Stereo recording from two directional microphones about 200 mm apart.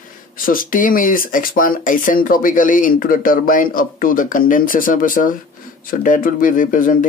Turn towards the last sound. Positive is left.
turn(degrees=40)  # may be behind; listen again after turning